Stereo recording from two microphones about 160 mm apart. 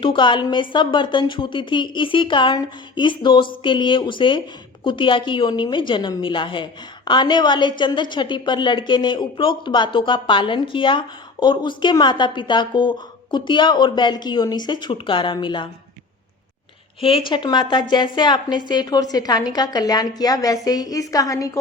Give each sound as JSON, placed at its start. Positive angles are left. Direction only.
{"t": 0.0, "sound": "a woman's voice", "side_deg": 30}
{"t": 17.0, "sound": "a woman's voice", "side_deg": 35}